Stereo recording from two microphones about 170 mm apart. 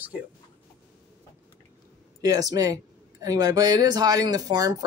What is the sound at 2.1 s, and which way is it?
Speech, 20° right (ahead or behind).